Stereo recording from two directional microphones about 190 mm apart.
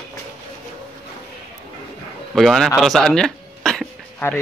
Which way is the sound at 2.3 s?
Centre (ahead or behind).